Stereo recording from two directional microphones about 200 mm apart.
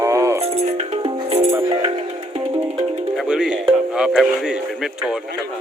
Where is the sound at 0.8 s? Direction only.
30° right (ahead or behind).